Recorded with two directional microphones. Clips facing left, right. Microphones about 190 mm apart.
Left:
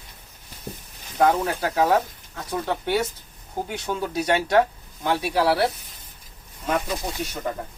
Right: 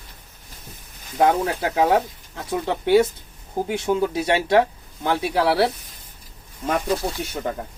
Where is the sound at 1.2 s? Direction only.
20° right (ahead or behind).